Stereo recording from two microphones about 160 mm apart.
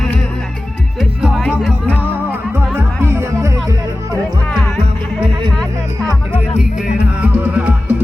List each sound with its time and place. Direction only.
0.9 s music: centre (ahead or behind)
2.7 s music: 15° right (ahead or behind)
4.8 s music: 35° right (ahead or behind)
6.6 s music: 5° right (ahead or behind)